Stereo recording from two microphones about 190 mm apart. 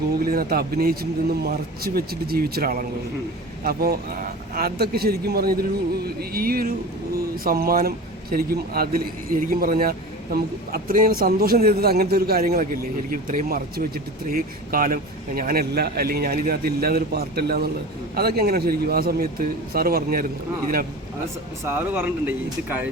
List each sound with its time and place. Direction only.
0.3 s a man's voice: 50° right (ahead or behind)
21.6 s speech: 10° right (ahead or behind)